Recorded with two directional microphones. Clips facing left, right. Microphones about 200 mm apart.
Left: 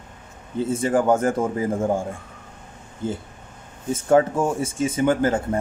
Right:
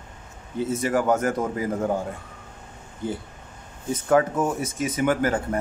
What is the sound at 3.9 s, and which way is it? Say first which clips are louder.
Speech: left 3 dB; 30° left (ahead or behind).